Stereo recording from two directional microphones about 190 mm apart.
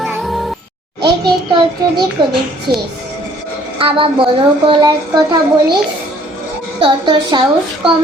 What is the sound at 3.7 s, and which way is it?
A woman's voice, 30° right (ahead or behind).